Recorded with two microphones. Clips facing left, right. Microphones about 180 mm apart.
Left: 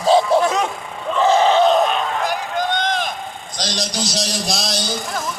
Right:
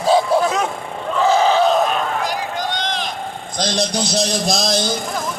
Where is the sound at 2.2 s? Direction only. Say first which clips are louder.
Left 2 dB; 50° left (ahead or behind).